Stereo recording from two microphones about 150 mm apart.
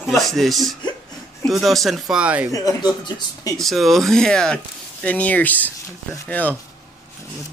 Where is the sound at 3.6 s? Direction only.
Centre (ahead or behind).